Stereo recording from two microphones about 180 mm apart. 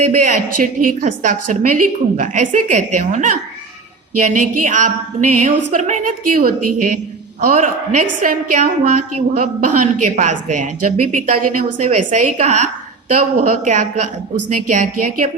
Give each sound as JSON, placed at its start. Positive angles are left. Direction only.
{"t": 0.1, "sound": "a woman's voice", "side_deg": -50}